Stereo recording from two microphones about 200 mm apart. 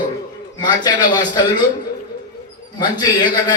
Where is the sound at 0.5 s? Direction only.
20° left (ahead or behind).